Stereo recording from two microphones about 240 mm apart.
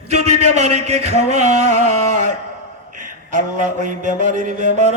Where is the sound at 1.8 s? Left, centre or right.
Right.